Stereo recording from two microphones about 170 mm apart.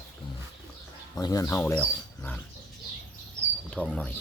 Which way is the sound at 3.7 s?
5° left (ahead or behind).